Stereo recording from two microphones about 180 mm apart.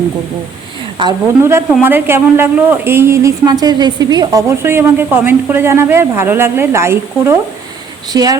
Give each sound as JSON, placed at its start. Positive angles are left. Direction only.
{"t": 1.0, "sound": "speech", "side_deg": -25}
{"t": 1.4, "sound": "speech", "side_deg": -15}